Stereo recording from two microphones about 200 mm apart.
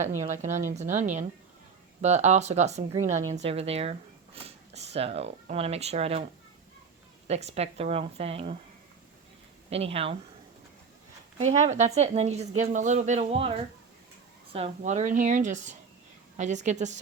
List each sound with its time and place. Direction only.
0.0 s a woman's voice: 35° right (ahead or behind)
7.3 s a woman's voice: 35° right (ahead or behind)
9.6 s speech: 30° right (ahead or behind)
11.3 s a woman's voice: 35° right (ahead or behind)